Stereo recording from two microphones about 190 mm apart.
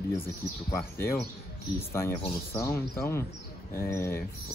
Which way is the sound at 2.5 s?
15° left (ahead or behind).